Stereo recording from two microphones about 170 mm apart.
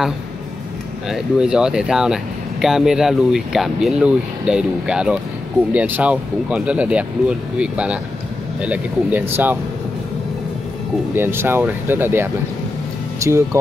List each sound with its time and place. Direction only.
1.0 s speech: 5° right (ahead or behind)
11.1 s speech: 15° right (ahead or behind)